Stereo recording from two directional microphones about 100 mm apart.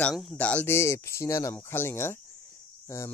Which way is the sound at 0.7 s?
25° left (ahead or behind).